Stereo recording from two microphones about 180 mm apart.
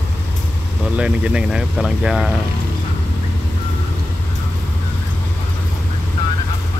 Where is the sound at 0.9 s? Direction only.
5° right (ahead or behind).